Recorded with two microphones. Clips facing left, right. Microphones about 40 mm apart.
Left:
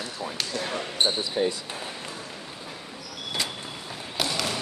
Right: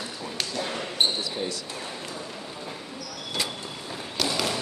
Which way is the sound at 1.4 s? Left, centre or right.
Left.